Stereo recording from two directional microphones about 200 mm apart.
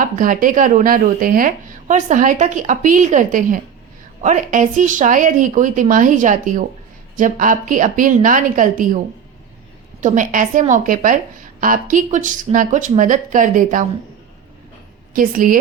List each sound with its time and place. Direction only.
0.0 s speech: 40° right (ahead or behind)
10.0 s speech: 40° right (ahead or behind)
15.1 s a woman's voice: 45° right (ahead or behind)